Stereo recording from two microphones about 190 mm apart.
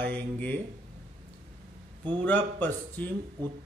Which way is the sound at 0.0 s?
10° left (ahead or behind).